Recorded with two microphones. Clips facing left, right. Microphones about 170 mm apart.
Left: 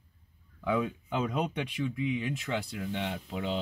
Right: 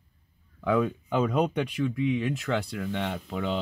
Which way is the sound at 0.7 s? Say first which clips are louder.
Right 5 dB; 65° right (ahead or behind).